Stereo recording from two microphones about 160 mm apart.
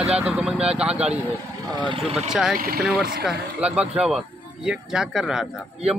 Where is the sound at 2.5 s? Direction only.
65° right (ahead or behind).